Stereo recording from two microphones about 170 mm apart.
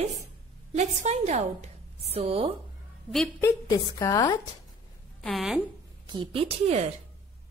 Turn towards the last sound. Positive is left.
turn(degrees=-35)  # may be behind; listen again after turning